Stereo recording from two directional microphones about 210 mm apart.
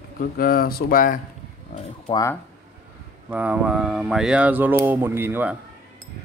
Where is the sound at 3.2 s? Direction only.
5° right (ahead or behind).